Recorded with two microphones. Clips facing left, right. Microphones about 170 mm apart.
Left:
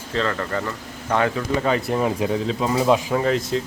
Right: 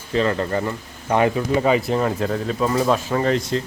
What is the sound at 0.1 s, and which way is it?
Speech, 20° right (ahead or behind).